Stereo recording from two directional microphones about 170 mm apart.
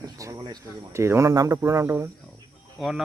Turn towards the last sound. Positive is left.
turn(degrees=0)  # may be behind; listen again after turning